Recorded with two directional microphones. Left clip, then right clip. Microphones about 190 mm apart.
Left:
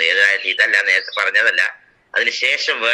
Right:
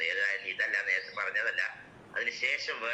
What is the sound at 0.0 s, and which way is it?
A man's voice, 50° left (ahead or behind).